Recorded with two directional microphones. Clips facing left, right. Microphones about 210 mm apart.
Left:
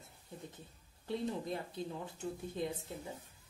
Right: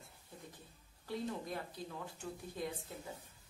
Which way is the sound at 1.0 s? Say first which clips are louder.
Left 3 dB; 25° left (ahead or behind).